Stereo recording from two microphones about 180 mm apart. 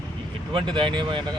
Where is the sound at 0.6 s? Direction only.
25° right (ahead or behind).